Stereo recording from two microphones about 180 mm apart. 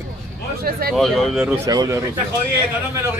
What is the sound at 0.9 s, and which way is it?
Speech, centre (ahead or behind).